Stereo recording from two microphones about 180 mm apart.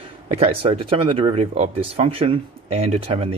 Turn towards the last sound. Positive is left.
turn(degrees=-35)  # may be behind; listen again after turning